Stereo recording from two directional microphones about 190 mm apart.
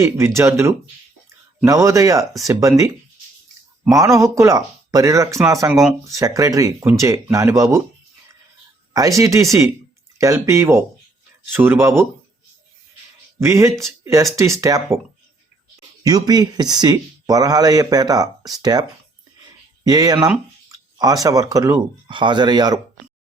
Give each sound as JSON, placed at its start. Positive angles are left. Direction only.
{"t": 0.0, "sound": "speech", "side_deg": -15}
{"t": 3.9, "sound": "speech", "side_deg": -15}
{"t": 8.9, "sound": "speech", "side_deg": -20}
{"t": 13.4, "sound": "speech", "side_deg": -15}
{"t": 16.0, "sound": "speech", "side_deg": -20}
{"t": 19.9, "sound": "speech", "side_deg": -20}